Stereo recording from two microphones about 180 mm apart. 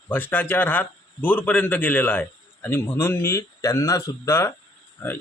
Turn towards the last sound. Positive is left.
turn(degrees=10)  # may be behind; listen again after turning